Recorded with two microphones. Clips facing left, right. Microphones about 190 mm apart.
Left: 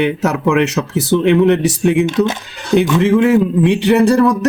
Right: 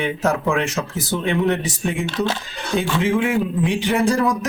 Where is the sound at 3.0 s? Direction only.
65° left (ahead or behind).